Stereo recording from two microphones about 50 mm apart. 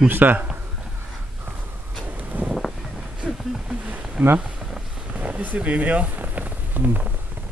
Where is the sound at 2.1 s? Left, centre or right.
Right.